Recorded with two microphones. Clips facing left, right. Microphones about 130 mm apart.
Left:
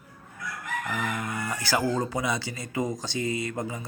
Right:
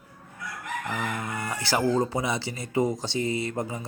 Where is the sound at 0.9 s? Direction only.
25° right (ahead or behind).